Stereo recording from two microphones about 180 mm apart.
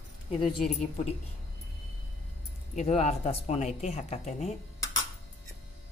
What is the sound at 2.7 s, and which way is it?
Speech, 40° left (ahead or behind).